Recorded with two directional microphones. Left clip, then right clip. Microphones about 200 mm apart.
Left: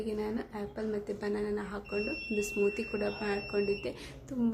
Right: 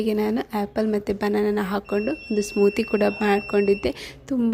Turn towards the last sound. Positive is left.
turn(degrees=-40)  # may be behind; listen again after turning